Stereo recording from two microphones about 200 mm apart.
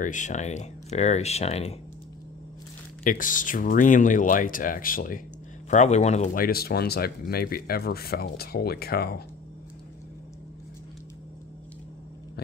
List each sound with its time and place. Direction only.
0.0 s speech: 40° left (ahead or behind)
3.0 s speech: 40° left (ahead or behind)